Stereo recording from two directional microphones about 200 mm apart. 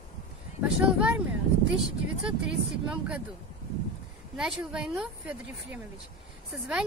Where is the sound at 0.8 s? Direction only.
5° right (ahead or behind).